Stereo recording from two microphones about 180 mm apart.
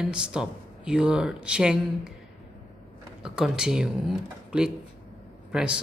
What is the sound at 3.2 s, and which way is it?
Speech, 5° right (ahead or behind).